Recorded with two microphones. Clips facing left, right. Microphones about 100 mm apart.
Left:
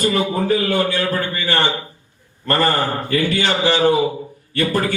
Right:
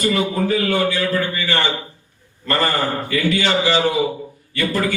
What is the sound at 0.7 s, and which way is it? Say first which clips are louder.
A man's voice: even; 50° left (ahead or behind).